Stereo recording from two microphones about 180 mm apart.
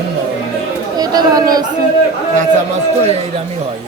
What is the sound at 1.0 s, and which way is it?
Speech, 20° right (ahead or behind).